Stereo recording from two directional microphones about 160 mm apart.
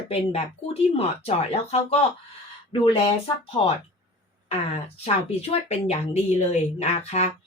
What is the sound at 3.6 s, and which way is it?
Speech, 35° left (ahead or behind).